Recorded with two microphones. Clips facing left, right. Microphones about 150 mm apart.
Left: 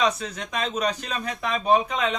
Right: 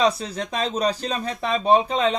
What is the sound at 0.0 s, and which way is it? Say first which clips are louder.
A man's voice: right 3 dB; 30° right (ahead or behind).